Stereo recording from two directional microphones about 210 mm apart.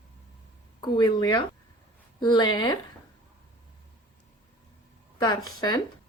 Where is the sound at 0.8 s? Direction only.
20° left (ahead or behind).